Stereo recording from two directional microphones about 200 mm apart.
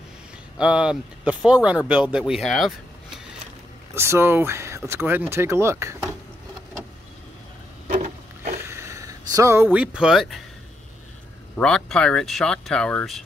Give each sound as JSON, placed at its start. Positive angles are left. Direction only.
{"t": 0.6, "sound": "speech", "side_deg": -5}
{"t": 3.9, "sound": "speech", "side_deg": -10}
{"t": 7.9, "sound": "wood", "side_deg": -40}
{"t": 8.6, "sound": "a sound", "side_deg": -15}
{"t": 11.5, "sound": "speech", "side_deg": 5}